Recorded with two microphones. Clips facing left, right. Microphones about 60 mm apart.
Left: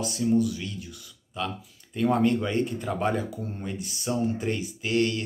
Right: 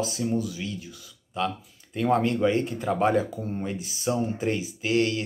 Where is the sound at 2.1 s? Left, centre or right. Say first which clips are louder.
Right 3 dB; right.